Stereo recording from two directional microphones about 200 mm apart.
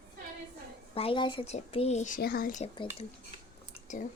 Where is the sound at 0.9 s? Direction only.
30° left (ahead or behind); by 2.6 s 45° left (ahead or behind).